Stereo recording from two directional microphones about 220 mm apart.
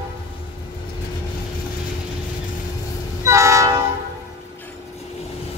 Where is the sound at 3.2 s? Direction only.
15° right (ahead or behind).